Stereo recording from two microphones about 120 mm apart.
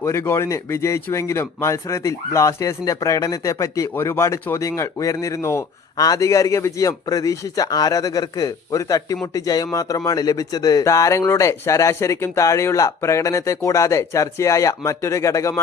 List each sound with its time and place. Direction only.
0.0 s speech: 20° left (ahead or behind)